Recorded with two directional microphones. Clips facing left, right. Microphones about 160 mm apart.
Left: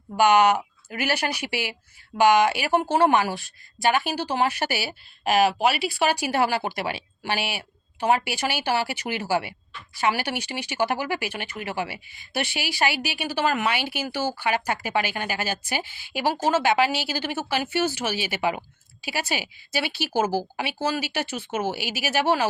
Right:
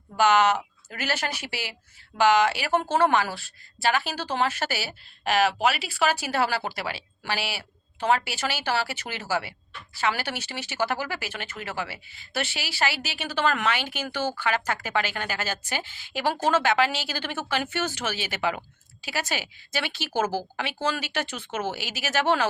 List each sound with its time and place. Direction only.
0.2 s speech: 15° left (ahead or behind)
6.1 s speech: 15° left (ahead or behind)